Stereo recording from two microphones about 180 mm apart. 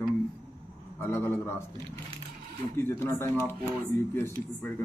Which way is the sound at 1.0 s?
15° left (ahead or behind).